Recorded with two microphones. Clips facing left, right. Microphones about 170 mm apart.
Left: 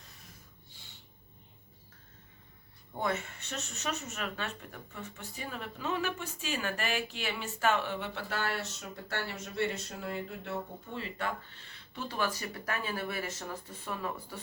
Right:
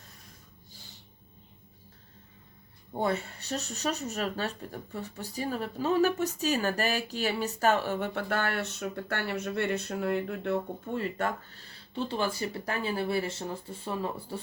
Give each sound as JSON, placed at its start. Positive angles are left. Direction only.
{"t": 2.9, "sound": "speech", "side_deg": -35}